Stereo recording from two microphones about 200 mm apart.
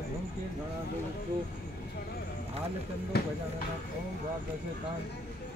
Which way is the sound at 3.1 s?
50° left (ahead or behind).